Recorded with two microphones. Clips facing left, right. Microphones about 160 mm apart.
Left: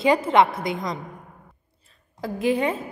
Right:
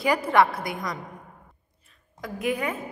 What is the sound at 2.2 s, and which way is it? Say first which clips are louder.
Speech: left 5 dB; 30° left (ahead or behind).